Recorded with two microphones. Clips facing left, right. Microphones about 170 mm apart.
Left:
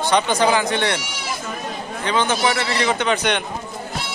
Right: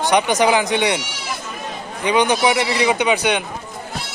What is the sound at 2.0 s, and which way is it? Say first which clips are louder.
A man's voice: right 4 dB; 15° right (ahead or behind).